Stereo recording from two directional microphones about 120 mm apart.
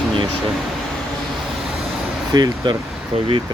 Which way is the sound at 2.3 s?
35° right (ahead or behind).